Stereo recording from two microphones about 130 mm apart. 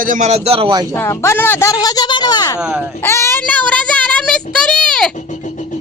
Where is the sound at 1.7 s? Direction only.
30° left (ahead or behind).